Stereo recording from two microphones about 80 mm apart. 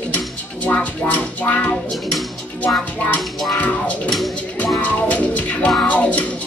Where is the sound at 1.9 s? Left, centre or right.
Centre.